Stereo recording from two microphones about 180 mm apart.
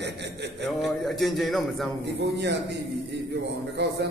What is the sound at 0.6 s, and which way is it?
A man's voice, centre (ahead or behind).